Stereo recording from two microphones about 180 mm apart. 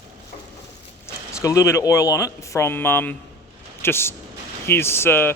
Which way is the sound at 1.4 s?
15° left (ahead or behind).